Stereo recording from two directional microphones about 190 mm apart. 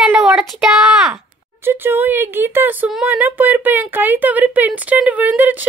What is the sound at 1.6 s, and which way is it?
Speech, 10° right (ahead or behind).